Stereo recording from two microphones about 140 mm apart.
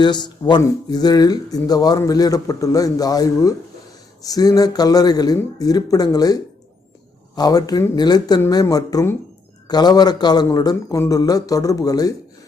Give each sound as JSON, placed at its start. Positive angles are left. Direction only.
{"t": 0.0, "sound": "a man's voice", "side_deg": 30}